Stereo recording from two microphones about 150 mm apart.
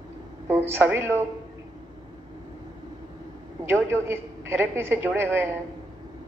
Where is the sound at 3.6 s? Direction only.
15° right (ahead or behind).